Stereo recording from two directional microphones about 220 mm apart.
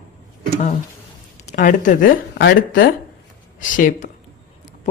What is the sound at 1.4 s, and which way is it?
Speech, 35° left (ahead or behind).